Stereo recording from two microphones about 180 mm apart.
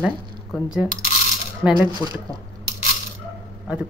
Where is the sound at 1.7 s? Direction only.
25° left (ahead or behind).